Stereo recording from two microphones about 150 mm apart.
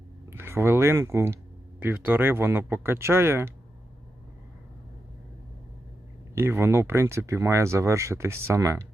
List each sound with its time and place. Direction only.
0.3 s speech: 15° right (ahead or behind)
6.3 s speech: 15° right (ahead or behind)